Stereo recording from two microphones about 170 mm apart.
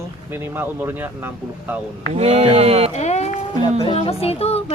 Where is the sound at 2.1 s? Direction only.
40° right (ahead or behind).